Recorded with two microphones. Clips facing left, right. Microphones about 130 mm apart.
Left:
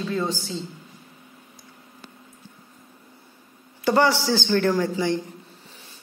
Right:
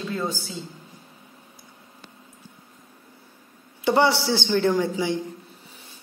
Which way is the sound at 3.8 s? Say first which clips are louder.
Even; 20° right (ahead or behind).